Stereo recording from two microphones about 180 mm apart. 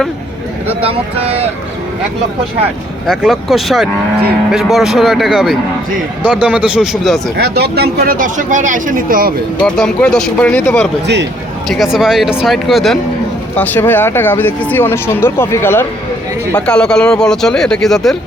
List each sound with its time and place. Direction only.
0.8 s speech: 35° right (ahead or behind)
3.1 s a man's voice: centre (ahead or behind)
7.5 s speech: 65° right (ahead or behind)
9.6 s speech: 5° left (ahead or behind)
11.0 s a man's voice: 75° right (ahead or behind)
11.7 s speech: centre (ahead or behind)